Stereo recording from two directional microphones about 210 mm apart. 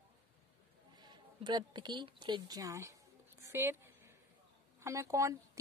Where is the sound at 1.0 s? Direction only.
20° right (ahead or behind).